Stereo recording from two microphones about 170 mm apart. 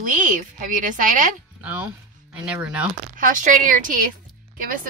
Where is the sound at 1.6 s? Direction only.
10° right (ahead or behind).